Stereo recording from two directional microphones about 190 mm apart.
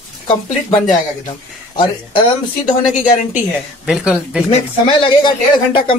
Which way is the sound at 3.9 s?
5° right (ahead or behind).